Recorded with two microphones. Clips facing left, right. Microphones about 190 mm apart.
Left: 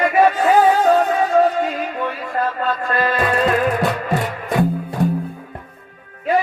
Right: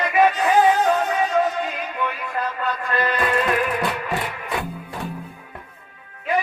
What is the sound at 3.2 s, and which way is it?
Music, 45° left (ahead or behind).